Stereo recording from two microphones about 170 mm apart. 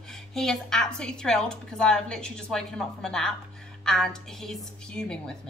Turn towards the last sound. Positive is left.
turn(degrees=5)  # may be behind; listen again after turning